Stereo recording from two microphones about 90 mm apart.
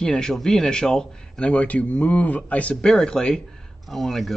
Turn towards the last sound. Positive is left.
turn(degrees=0)  # may be behind; listen again after turning